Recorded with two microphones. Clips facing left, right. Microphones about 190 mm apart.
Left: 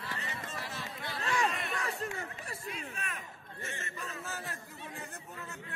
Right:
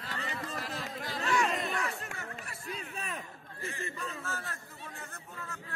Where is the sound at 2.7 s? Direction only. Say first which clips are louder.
Right 2 dB; 35° right (ahead or behind).